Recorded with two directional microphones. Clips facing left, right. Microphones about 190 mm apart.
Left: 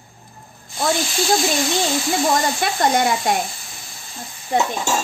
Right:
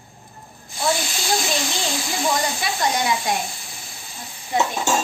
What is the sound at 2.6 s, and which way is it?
Speech, 60° left (ahead or behind).